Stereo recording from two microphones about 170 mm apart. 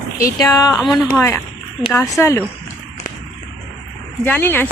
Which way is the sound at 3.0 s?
50° left (ahead or behind).